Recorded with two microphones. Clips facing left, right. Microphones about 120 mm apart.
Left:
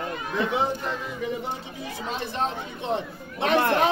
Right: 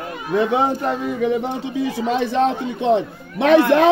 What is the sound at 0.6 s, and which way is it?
A man's voice, 70° right (ahead or behind).